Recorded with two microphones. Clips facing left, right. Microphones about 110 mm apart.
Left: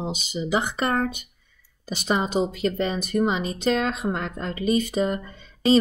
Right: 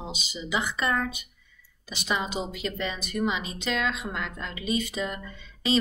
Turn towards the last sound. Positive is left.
turn(degrees=45)  # may be behind; listen again after turning